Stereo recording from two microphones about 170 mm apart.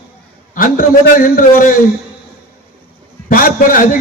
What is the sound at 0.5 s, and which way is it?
A man's voice, 55° left (ahead or behind).